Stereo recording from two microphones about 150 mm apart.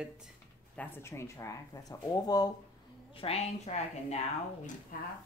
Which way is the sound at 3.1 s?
40° left (ahead or behind).